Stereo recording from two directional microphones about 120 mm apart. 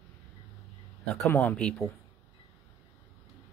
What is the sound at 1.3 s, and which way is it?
Speech, 10° left (ahead or behind).